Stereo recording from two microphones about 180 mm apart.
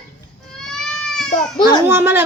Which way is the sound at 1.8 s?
15° right (ahead or behind).